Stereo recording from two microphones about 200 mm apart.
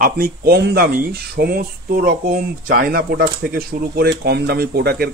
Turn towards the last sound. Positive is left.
turn(degrees=-50)  # may be behind; listen again after turning